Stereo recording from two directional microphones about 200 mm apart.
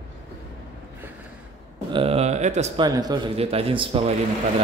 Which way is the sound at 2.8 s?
20° right (ahead or behind).